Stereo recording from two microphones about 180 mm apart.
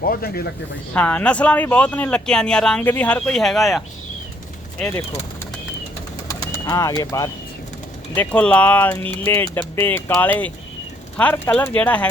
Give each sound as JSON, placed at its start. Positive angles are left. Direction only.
{"t": 0.0, "sound": "speech", "side_deg": 55}
{"t": 0.9, "sound": "speech", "side_deg": 5}
{"t": 4.8, "sound": "speech", "side_deg": 15}
{"t": 6.2, "sound": "bird", "side_deg": 20}
{"t": 8.1, "sound": "speech", "side_deg": 10}